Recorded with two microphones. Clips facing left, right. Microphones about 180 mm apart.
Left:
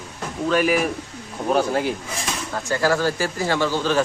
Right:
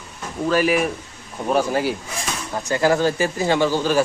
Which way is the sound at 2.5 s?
20° right (ahead or behind).